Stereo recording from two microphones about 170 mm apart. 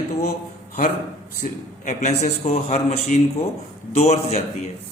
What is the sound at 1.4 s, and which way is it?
A man's voice, 45° left (ahead or behind).